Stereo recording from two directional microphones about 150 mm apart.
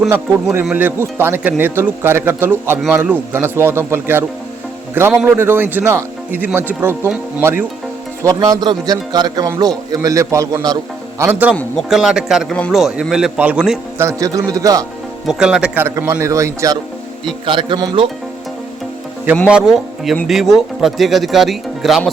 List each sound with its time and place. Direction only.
0.6 s speech: 10° right (ahead or behind)
8.2 s a man's voice: 25° right (ahead or behind)
11.2 s speech: 10° right (ahead or behind)
11.5 s speech: centre (ahead or behind)
14.0 s a man's voice: 20° right (ahead or behind)
15.3 s a man's voice: 5° right (ahead or behind); by 16.7 s 20° right (ahead or behind)
17.4 s speech: 30° right (ahead or behind)
19.5 s speech: 5° right (ahead or behind)